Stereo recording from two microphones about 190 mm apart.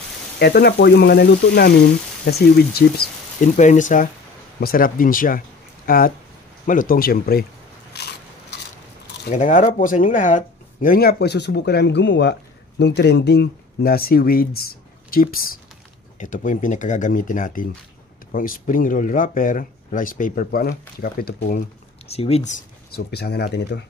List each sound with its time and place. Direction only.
0.4 s speech: 55° left (ahead or behind)
3.5 s speech: 40° left (ahead or behind)
8.0 s biting: 60° left (ahead or behind)
9.3 s speech: 40° left (ahead or behind)
22.1 s speech: 35° left (ahead or behind)
22.8 s speech: 60° left (ahead or behind)